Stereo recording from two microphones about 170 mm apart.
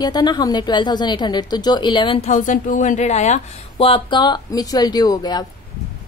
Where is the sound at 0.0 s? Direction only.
25° left (ahead or behind).